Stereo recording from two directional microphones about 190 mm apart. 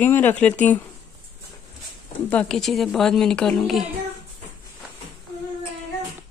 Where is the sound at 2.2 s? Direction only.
5° left (ahead or behind).